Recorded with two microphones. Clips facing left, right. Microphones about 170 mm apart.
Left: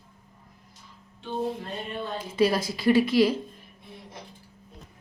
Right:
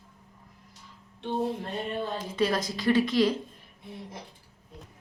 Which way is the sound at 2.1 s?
10° left (ahead or behind).